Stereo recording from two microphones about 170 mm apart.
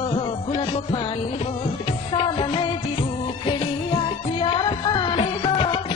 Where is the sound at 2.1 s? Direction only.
30° left (ahead or behind).